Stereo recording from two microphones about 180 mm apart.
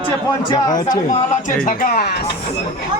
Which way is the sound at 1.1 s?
45° left (ahead or behind).